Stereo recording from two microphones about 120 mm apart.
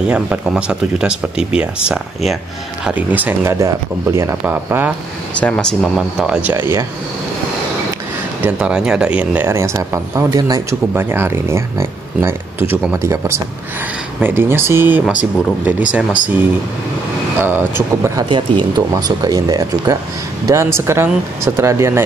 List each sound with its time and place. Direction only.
0.0 s speech: 5° right (ahead or behind)
3.5 s speech: 30° right (ahead or behind)
5.3 s speech: 10° left (ahead or behind); by 6.5 s 5° right (ahead or behind)
6.5 s speech: 20° right (ahead or behind)
8.5 s speech: 10° right (ahead or behind)
9.5 s speech: 25° right (ahead or behind)
17.4 s speech: 20° right (ahead or behind)
18.3 s speech: 40° right (ahead or behind)